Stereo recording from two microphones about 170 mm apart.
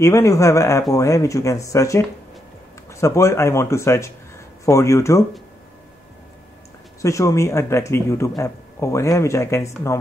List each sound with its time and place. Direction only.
0.0 s speech: 15° left (ahead or behind)
7.0 s speech: 20° left (ahead or behind)